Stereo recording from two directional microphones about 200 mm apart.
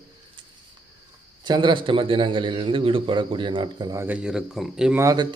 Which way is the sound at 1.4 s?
20° right (ahead or behind).